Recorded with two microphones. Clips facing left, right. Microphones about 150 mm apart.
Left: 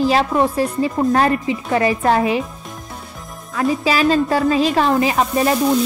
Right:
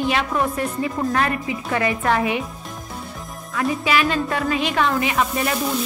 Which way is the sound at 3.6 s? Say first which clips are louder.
Left 3 dB; 30° left (ahead or behind).